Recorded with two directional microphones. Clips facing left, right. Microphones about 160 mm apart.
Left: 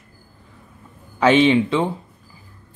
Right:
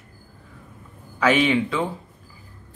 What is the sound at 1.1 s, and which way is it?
Speech, 25° left (ahead or behind).